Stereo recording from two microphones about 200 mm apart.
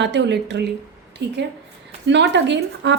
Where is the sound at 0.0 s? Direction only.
60° right (ahead or behind).